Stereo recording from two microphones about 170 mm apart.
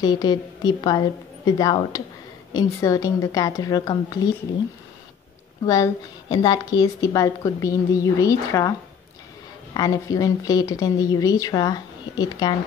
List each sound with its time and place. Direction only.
0.0 s a woman's voice: 25° left (ahead or behind)
5.7 s a woman's voice: 20° left (ahead or behind)
9.8 s a woman's voice: 20° left (ahead or behind)